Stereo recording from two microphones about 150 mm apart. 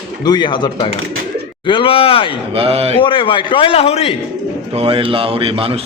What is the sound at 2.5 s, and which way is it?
Speech, 40° right (ahead or behind).